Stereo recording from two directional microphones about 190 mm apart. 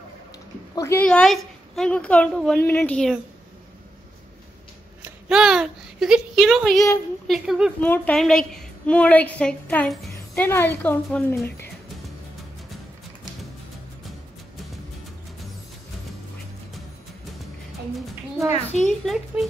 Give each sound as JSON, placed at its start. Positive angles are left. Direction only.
{"t": 0.7, "sound": "a woman's voice", "side_deg": 15}
{"t": 5.0, "sound": "a woman's voice", "side_deg": -5}
{"t": 7.8, "sound": "a woman's voice", "side_deg": 10}
{"t": 18.5, "sound": "a child's voice", "side_deg": 35}
{"t": 19.0, "sound": "a woman's voice", "side_deg": 0}